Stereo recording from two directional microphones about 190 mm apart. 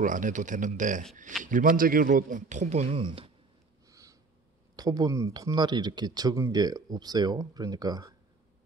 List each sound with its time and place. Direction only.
0.0 s speech: 45° right (ahead or behind); by 3.3 s 25° right (ahead or behind)
3.9 s a sound: 15° right (ahead or behind)
4.7 s speech: 20° right (ahead or behind)